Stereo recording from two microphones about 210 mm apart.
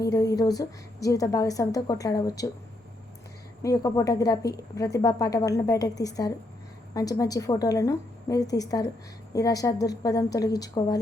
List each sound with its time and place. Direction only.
0.0 s a woman's voice: 15° left (ahead or behind)
3.6 s a woman's voice: 15° left (ahead or behind)